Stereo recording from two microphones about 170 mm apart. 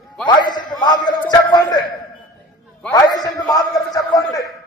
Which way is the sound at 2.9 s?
25° left (ahead or behind).